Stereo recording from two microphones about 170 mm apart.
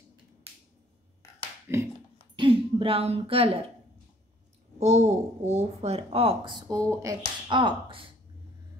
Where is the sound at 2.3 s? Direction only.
30° right (ahead or behind).